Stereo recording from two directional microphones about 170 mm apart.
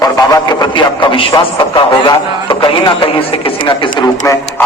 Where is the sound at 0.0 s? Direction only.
20° left (ahead or behind).